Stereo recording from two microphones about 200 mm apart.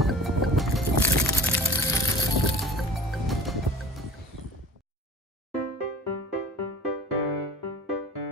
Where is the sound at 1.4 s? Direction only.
15° left (ahead or behind).